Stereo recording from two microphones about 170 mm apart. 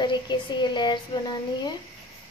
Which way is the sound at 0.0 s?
25° left (ahead or behind).